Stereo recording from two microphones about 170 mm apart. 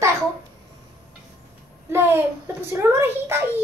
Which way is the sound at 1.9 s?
15° right (ahead or behind).